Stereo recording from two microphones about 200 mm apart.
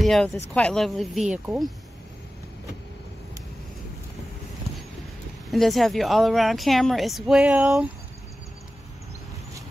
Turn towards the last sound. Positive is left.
turn(degrees=-5)  # may be behind; listen again after turning